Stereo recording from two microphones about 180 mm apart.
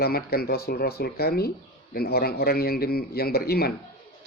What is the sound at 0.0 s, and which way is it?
Speech, 60° left (ahead or behind).